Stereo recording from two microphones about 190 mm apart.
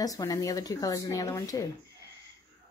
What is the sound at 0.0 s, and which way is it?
Speech, 20° left (ahead or behind).